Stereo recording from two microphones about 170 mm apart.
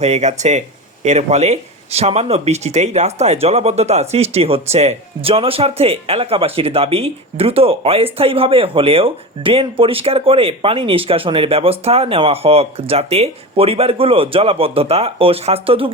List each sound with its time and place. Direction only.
0.0 s speech: 40° right (ahead or behind)